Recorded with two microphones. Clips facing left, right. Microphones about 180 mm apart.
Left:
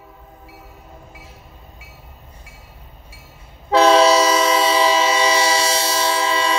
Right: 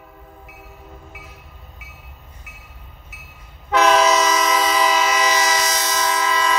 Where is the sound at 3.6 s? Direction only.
30° left (ahead or behind).